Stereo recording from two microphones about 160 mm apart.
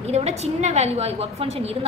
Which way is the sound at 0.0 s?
40° right (ahead or behind).